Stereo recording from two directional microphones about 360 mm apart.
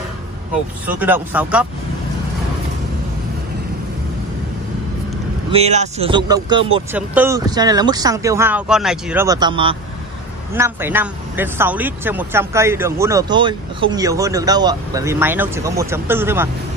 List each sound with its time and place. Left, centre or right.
0.9 s speech: centre
5.5 s speech: centre